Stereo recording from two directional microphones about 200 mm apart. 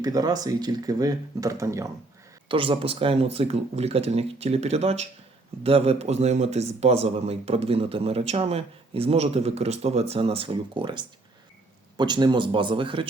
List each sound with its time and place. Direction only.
0.0 s speech: 20° right (ahead or behind)
2.5 s speech: 25° right (ahead or behind)